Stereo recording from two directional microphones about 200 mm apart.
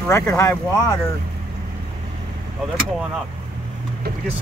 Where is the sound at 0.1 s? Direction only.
15° left (ahead or behind).